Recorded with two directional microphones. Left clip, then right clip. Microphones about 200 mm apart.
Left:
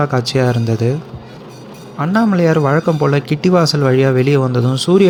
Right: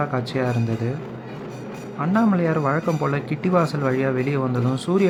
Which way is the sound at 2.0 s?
15° left (ahead or behind).